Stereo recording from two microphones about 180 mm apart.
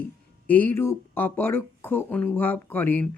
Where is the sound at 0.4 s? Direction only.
10° left (ahead or behind).